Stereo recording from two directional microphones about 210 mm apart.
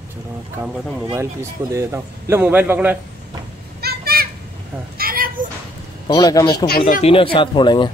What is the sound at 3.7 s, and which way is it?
Children playing, 50° right (ahead or behind).